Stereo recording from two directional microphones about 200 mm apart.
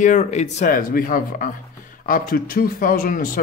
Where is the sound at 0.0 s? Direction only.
40° left (ahead or behind).